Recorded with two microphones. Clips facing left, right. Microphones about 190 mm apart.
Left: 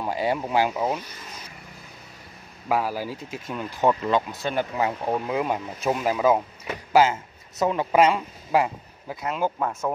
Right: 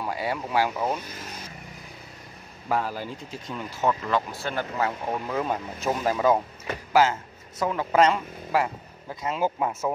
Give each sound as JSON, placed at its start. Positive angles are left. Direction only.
{"t": 0.0, "sound": "speech", "side_deg": 25}
{"t": 2.7, "sound": "speech", "side_deg": 10}
{"t": 7.5, "sound": "speech", "side_deg": 20}
{"t": 9.1, "sound": "speech", "side_deg": 0}